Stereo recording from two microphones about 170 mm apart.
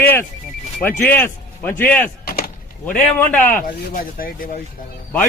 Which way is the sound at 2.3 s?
60° left (ahead or behind).